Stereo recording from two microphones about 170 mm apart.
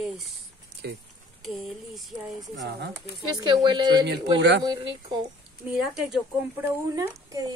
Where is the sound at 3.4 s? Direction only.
25° right (ahead or behind).